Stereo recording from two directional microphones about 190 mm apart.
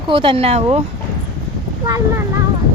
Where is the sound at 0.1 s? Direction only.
25° right (ahead or behind).